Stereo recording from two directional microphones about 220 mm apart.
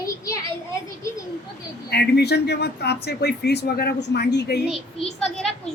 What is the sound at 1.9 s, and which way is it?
Speech, 45° left (ahead or behind).